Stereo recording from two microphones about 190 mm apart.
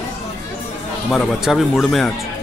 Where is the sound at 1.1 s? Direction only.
Centre (ahead or behind).